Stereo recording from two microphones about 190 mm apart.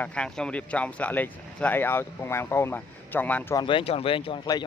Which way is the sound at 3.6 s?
30° left (ahead or behind).